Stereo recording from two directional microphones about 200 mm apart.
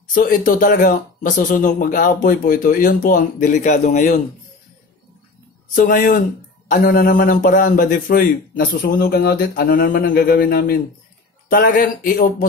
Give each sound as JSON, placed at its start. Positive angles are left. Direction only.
{"t": 0.1, "sound": "speech", "side_deg": 45}
{"t": 5.8, "sound": "a man's voice", "side_deg": 40}